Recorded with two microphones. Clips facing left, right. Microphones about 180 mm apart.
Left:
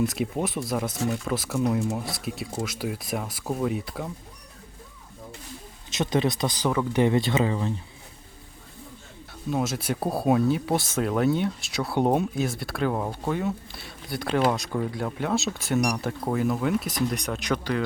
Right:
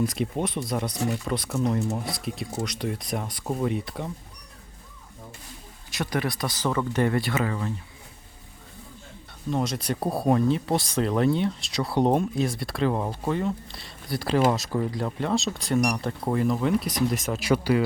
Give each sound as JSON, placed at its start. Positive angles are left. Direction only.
{"t": 0.0, "sound": "speech", "side_deg": 0}
{"t": 5.9, "sound": "speech", "side_deg": 20}
{"t": 9.5, "sound": "speech", "side_deg": 5}